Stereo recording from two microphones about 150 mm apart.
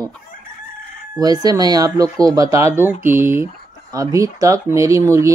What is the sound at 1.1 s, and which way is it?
Speech, 25° right (ahead or behind).